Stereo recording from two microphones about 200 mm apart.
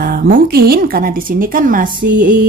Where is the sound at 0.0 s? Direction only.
45° right (ahead or behind).